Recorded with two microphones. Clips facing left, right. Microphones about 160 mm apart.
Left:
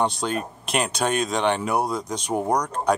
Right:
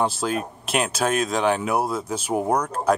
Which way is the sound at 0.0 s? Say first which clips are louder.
Right 1 dB; 5° right (ahead or behind).